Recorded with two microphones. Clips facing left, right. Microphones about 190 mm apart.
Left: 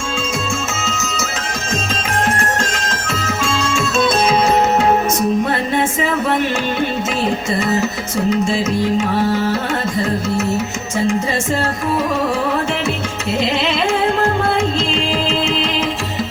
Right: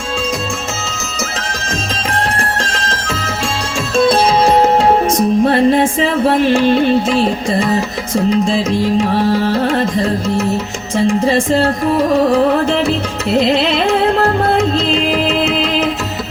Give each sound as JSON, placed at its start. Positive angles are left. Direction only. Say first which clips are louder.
{"t": 2.8, "sound": "music", "louder": "right 1 dB", "side_deg": -35}
{"t": 7.8, "sound": "music", "louder": "right 2 dB", "side_deg": -35}
{"t": 13.3, "sound": "music", "louder": "right 6 dB", "side_deg": -35}